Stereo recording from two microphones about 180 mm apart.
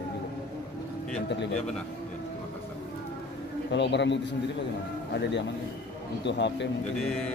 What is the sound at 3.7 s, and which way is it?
Speech, 75° left (ahead or behind).